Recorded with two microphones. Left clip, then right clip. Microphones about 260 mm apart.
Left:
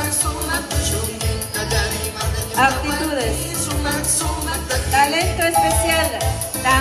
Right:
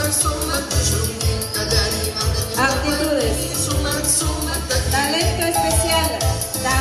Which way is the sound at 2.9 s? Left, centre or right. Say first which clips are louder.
Right 2 dB; centre.